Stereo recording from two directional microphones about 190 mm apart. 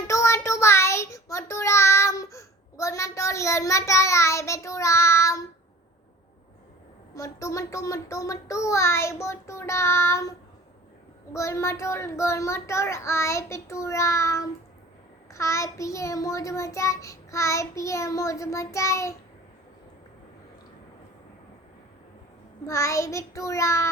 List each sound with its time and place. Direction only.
0.1 s child singing: 15° left (ahead or behind)
7.1 s child singing: 15° left (ahead or behind)
22.6 s child singing: 15° left (ahead or behind)